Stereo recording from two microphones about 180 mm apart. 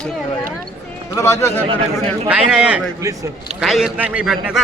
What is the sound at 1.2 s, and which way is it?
Speech, 15° left (ahead or behind).